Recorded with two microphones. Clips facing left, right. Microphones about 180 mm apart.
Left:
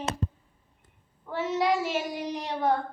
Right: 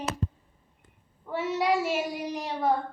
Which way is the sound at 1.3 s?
10° right (ahead or behind).